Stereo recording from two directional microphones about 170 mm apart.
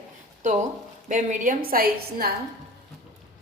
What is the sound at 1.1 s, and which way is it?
A woman's voice, 50° right (ahead or behind).